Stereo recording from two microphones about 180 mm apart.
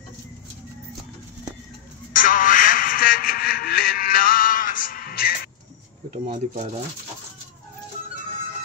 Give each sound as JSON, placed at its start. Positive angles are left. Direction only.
{"t": 2.1, "sound": "music", "side_deg": 50}
{"t": 6.2, "sound": "speech", "side_deg": -35}